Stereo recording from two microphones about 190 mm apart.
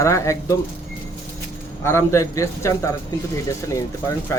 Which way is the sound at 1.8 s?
15° left (ahead or behind).